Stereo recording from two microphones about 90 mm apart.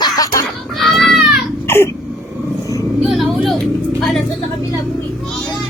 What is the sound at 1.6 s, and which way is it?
Throat clearing, 25° left (ahead or behind).